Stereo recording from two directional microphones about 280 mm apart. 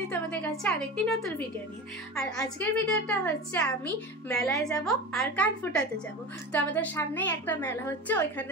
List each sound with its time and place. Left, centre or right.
0.1 s a woman's voice: centre
2.4 s a woman's voice: centre